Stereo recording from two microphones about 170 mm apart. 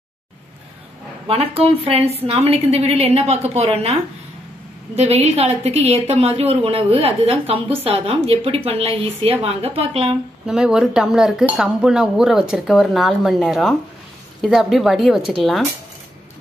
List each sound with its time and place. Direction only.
1.2 s a woman's voice: 35° right (ahead or behind)
10.4 s speech: 5° right (ahead or behind)